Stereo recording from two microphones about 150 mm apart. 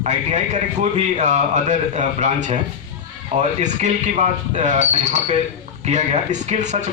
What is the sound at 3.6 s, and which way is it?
A man's voice, 50° right (ahead or behind).